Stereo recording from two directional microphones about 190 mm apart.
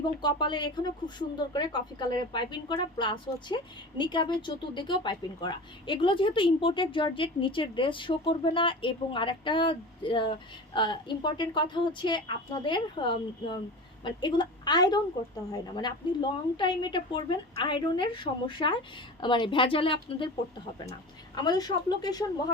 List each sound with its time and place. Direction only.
0.2 s speech: 20° left (ahead or behind)
21.3 s speech: 20° left (ahead or behind)